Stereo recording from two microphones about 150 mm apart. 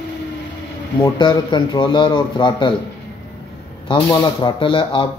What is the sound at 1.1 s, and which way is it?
Speech, 30° left (ahead or behind).